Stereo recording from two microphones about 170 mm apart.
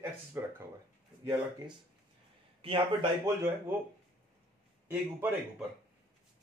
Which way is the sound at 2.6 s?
30° right (ahead or behind).